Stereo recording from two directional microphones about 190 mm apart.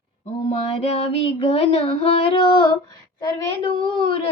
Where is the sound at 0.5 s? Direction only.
30° left (ahead or behind).